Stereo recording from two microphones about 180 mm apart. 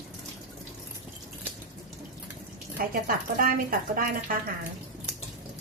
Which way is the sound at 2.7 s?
50° right (ahead or behind).